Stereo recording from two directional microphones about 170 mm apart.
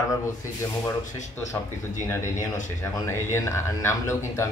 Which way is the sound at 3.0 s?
15° left (ahead or behind).